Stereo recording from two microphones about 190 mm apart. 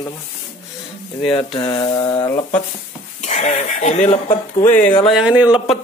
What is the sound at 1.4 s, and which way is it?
Speech, 20° left (ahead or behind).